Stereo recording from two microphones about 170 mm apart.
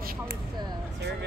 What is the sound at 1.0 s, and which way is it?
Vehicle, 85° right.